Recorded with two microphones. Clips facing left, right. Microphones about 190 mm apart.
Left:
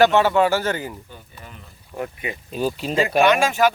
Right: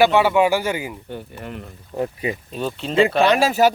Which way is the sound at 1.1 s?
65° right (ahead or behind).